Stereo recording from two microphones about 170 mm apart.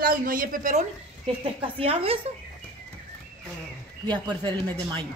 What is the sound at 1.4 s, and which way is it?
Speech, 35° right (ahead or behind).